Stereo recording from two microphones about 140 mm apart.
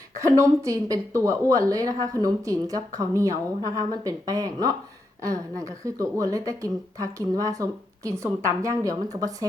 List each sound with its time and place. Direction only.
0.2 s a woman's voice: 20° right (ahead or behind)